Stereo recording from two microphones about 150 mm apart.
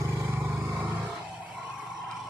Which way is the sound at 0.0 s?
15° right (ahead or behind).